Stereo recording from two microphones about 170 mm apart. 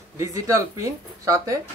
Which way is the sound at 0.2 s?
20° right (ahead or behind).